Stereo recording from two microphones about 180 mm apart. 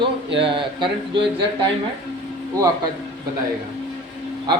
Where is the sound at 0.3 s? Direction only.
30° right (ahead or behind).